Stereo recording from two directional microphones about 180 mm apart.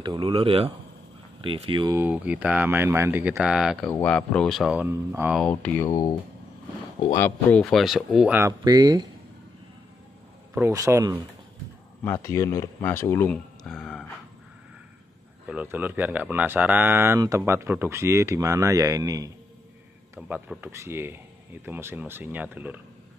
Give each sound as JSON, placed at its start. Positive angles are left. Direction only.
{"t": 0.0, "sound": "speech", "side_deg": -25}
{"t": 2.0, "sound": "speech", "side_deg": -10}
{"t": 5.3, "sound": "speech", "side_deg": 5}
{"t": 5.9, "sound": "speech", "side_deg": 25}
{"t": 7.2, "sound": "speech", "side_deg": 10}
{"t": 7.7, "sound": "speech", "side_deg": 0}
{"t": 10.5, "sound": "speech", "side_deg": -15}
{"t": 12.0, "sound": "speech", "side_deg": 15}
{"t": 15.4, "sound": "speech", "side_deg": -10}
{"t": 20.2, "sound": "speech", "side_deg": -5}